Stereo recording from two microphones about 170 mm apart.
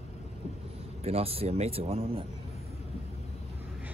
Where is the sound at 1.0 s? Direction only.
35° right (ahead or behind).